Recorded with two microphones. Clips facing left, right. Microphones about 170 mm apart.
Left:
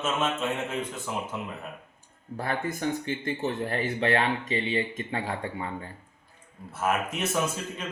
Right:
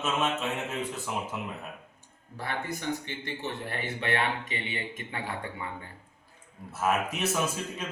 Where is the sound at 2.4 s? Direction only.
50° left (ahead or behind); by 5.7 s 30° left (ahead or behind).